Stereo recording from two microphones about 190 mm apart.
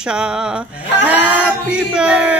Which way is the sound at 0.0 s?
5° right (ahead or behind).